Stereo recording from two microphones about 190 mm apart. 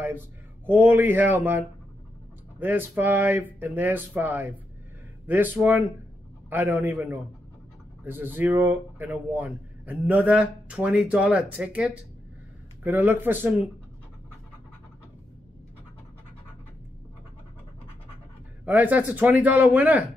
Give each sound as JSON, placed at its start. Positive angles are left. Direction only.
{"t": 0.7, "sound": "speech", "side_deg": -10}
{"t": 2.6, "sound": "speech", "side_deg": -10}
{"t": 18.7, "sound": "speech", "side_deg": -10}